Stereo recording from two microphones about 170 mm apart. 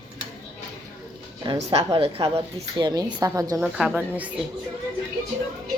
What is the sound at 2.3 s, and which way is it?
A woman's voice, 25° right (ahead or behind).